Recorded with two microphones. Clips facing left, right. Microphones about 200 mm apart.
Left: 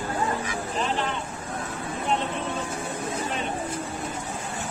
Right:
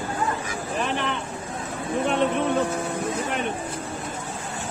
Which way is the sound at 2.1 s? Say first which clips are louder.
Right 5 dB; 60° right (ahead or behind).